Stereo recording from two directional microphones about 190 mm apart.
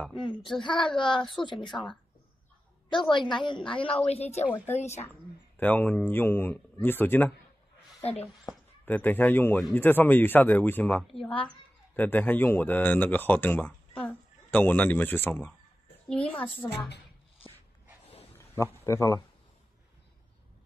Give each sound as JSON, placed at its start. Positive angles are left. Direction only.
{"t": 0.6, "sound": "a woman's voice", "side_deg": 25}
{"t": 1.7, "sound": "a child's voice", "side_deg": 5}
{"t": 3.1, "sound": "a woman's voice", "side_deg": 25}
{"t": 5.6, "sound": "speech", "side_deg": 10}
{"t": 8.0, "sound": "a woman's voice", "side_deg": 30}
{"t": 8.8, "sound": "a child's voice", "side_deg": 10}
{"t": 18.5, "sound": "speech", "side_deg": 15}